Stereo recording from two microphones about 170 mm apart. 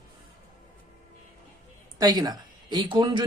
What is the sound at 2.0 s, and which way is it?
Speech, 25° right (ahead or behind).